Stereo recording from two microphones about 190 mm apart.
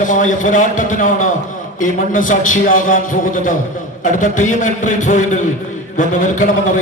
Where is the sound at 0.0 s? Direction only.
45° left (ahead or behind).